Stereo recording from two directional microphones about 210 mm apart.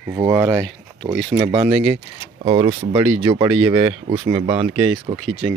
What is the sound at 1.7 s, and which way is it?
Speech, centre (ahead or behind).